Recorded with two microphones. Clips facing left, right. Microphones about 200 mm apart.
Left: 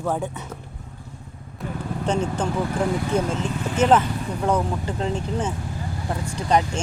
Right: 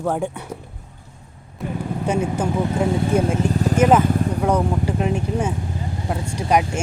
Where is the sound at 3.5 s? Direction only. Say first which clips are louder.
Right 7 dB; 40° right (ahead or behind).